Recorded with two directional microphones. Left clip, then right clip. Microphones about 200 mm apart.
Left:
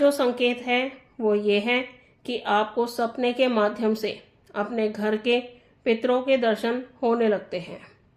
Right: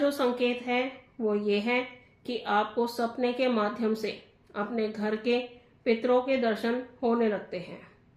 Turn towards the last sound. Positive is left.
turn(degrees=50)  # may be behind; listen again after turning